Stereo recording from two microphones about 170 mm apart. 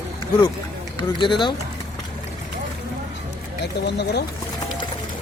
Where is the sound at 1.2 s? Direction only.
30° left (ahead or behind).